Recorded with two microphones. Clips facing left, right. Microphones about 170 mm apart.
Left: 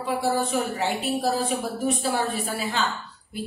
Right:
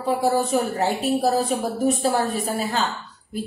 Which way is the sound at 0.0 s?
40° right (ahead or behind).